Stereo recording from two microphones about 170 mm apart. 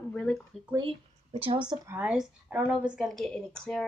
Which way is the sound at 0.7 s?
30° right (ahead or behind).